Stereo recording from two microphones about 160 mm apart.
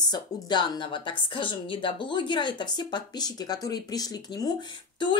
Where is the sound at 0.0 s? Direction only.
25° left (ahead or behind).